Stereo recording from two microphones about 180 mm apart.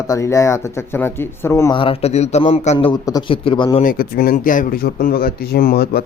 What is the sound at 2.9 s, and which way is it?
Speech, 25° left (ahead or behind).